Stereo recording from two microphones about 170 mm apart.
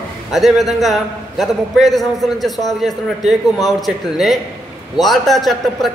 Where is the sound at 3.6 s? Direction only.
Centre (ahead or behind).